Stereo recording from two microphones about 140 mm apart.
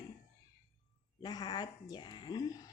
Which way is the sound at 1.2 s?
30° left (ahead or behind).